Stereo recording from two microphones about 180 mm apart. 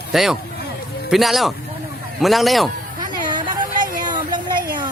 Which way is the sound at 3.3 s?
25° right (ahead or behind).